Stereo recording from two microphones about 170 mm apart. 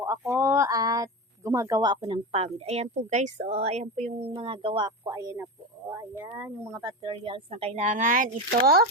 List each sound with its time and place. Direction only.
0.0 s speech: 15° right (ahead or behind)
6.3 s speech: 5° right (ahead or behind)
6.8 s speech: 30° right (ahead or behind); by 8.9 s 60° right (ahead or behind)